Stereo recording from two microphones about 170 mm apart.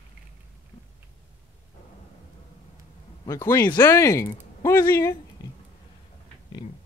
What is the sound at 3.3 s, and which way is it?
Speech, 15° left (ahead or behind).